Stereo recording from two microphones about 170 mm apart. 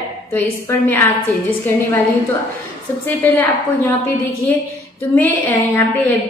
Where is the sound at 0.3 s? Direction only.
10° left (ahead or behind).